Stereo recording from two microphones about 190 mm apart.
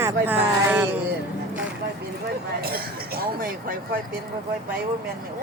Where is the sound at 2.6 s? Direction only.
55° right (ahead or behind).